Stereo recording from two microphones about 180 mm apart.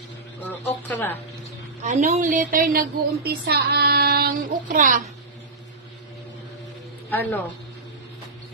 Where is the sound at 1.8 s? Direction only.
40° right (ahead or behind).